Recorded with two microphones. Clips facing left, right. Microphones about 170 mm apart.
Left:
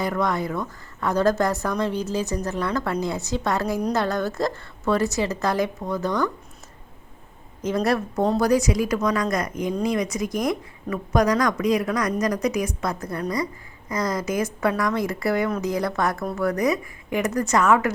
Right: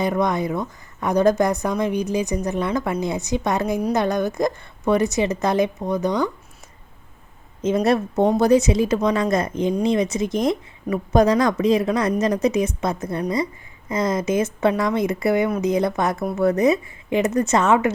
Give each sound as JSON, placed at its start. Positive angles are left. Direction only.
{"t": 0.0, "sound": "a woman's voice", "side_deg": -20}
{"t": 7.6, "sound": "a woman's voice", "side_deg": -20}